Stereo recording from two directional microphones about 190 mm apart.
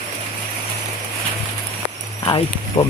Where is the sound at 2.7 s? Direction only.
35° left (ahead or behind).